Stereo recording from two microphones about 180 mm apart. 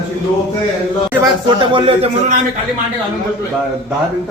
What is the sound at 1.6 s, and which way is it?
Speech, 25° right (ahead or behind).